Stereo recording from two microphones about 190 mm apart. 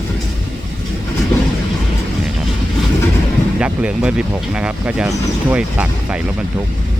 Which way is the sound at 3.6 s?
5° right (ahead or behind).